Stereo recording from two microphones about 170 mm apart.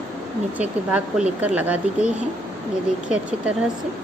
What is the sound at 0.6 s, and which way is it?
Speech, 5° right (ahead or behind).